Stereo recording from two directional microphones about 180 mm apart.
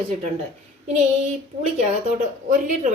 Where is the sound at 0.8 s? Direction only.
40° right (ahead or behind).